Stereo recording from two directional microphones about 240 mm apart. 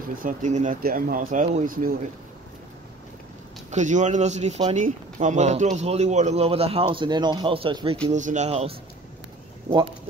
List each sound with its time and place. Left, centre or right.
0.2 s speech: right
3.7 s speech: right